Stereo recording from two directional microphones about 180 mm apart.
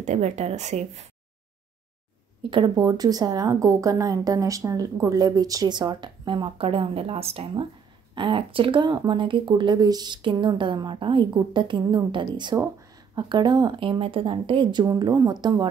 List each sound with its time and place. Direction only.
0.0 s a woman's voice: 40° right (ahead or behind)
2.5 s a woman's voice: 25° right (ahead or behind)